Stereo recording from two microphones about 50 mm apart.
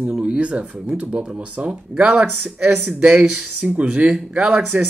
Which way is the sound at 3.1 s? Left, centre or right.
Centre.